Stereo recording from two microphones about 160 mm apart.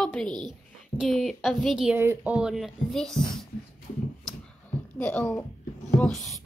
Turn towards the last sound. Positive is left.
turn(degrees=5)  # may be behind; listen again after turning